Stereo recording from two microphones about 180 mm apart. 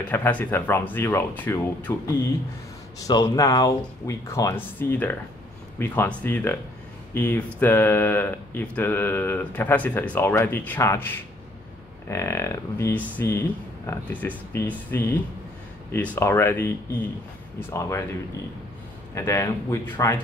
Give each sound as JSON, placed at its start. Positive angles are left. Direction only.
{"t": 0.0, "sound": "speech", "side_deg": 10}
{"t": 19.1, "sound": "speech", "side_deg": 15}